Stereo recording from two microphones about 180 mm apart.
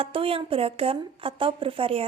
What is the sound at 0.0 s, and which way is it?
A woman's voice, 30° right (ahead or behind).